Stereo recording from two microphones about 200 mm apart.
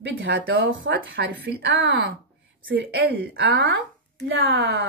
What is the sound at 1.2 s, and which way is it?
Speech, 60° right (ahead or behind).